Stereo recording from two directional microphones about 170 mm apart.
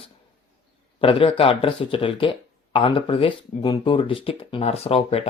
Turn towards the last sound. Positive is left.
turn(degrees=35)  # may be behind; listen again after turning